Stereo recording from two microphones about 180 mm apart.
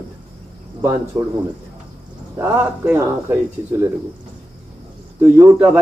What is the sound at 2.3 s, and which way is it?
A man's voice, 15° right (ahead or behind).